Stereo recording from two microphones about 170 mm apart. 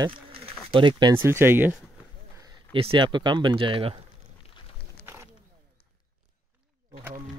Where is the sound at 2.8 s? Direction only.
30° right (ahead or behind).